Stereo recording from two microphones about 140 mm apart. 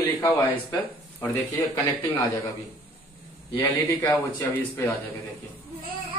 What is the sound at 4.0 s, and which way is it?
Speech, 15° left (ahead or behind).